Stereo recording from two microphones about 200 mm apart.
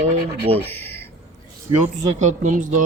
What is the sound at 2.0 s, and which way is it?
Speech, 35° right (ahead or behind).